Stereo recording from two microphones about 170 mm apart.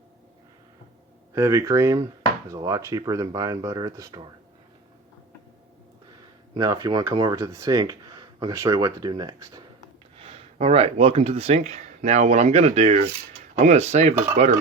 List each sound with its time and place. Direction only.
1.4 s speech: 15° right (ahead or behind)
6.5 s speech: 20° right (ahead or behind)
10.2 s speech: 35° right (ahead or behind)